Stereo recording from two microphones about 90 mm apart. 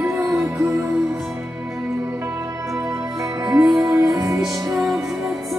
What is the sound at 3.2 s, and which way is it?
Music, 40° right (ahead or behind).